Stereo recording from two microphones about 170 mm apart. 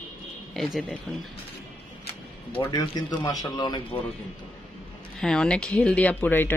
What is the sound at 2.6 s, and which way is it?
Speech, 25° left (ahead or behind).